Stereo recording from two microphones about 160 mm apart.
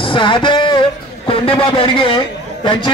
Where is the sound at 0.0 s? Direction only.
30° left (ahead or behind).